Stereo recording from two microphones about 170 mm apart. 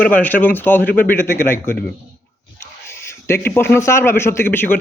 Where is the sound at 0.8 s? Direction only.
60° left (ahead or behind).